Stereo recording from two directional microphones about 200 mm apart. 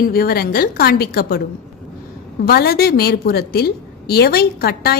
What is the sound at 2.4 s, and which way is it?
A woman's voice, 50° left (ahead or behind).